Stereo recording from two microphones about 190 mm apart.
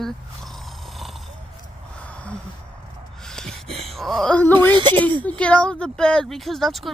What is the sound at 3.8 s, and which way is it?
Speech, centre (ahead or behind).